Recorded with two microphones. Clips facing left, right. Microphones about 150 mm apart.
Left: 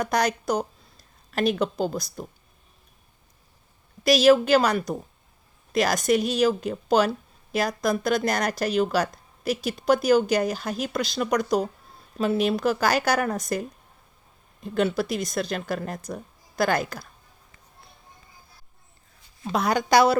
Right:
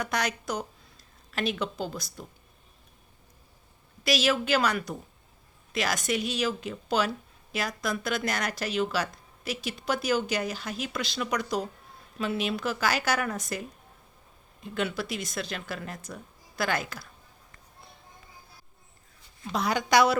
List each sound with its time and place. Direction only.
0.0 s speech: 40° left (ahead or behind)
4.0 s speech: 40° left (ahead or behind)
19.5 s a woman's voice: 50° left (ahead or behind)
19.9 s speech: 35° left (ahead or behind)